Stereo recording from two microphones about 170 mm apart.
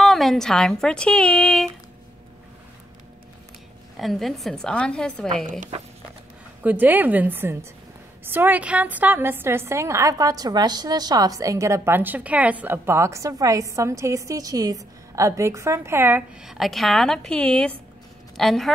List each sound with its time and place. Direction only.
0.0 s speech: centre (ahead or behind)
3.9 s a woman's voice: centre (ahead or behind)
5.5 s speech: 50° right (ahead or behind)
6.6 s a woman's voice: 10° right (ahead or behind)